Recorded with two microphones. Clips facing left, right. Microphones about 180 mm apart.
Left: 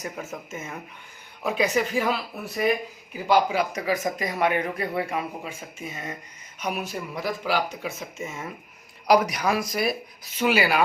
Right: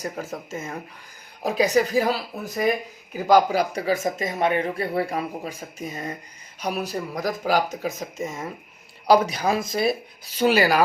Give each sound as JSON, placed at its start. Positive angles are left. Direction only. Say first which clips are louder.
{"t": 0.0, "sound": "speech", "louder": "right 3 dB", "side_deg": -35}